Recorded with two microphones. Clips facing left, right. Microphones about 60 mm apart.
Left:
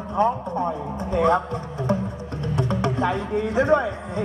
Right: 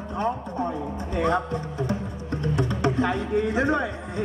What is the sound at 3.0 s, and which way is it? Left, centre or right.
A man's voice, left.